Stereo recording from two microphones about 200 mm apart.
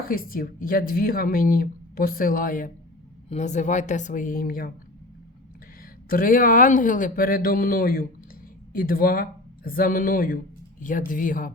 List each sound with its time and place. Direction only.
0.0 s a woman's voice: 45° left (ahead or behind)
6.1 s speech: 45° left (ahead or behind)